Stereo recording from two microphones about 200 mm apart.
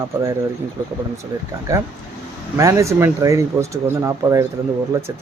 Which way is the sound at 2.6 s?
15° right (ahead or behind).